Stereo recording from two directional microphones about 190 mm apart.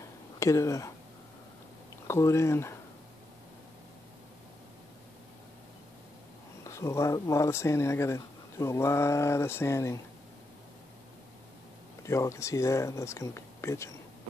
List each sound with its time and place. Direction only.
0.4 s speech: 15° left (ahead or behind)
2.0 s speech: 15° left (ahead or behind)
6.6 s speech: 15° left (ahead or behind)
12.0 s speech: 15° left (ahead or behind)